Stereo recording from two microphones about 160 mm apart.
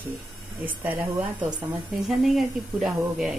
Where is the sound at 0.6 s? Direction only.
10° right (ahead or behind).